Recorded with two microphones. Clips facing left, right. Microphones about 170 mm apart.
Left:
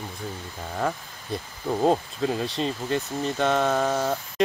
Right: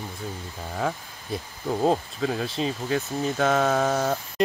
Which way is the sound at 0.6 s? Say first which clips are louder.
Left 1 dB; centre (ahead or behind).